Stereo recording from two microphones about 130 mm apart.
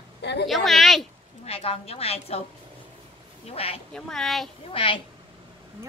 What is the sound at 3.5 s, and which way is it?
Speech, 50° left (ahead or behind).